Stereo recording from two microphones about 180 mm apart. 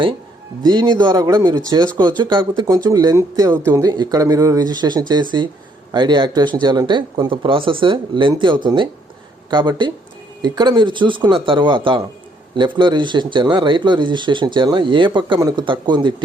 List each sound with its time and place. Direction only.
0.6 s speech: 25° right (ahead or behind)